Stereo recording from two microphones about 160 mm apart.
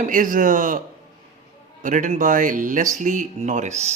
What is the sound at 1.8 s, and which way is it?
A man's voice, 50° right (ahead or behind).